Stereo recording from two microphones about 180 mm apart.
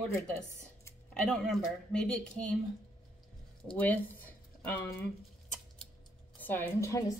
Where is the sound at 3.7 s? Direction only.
10° left (ahead or behind).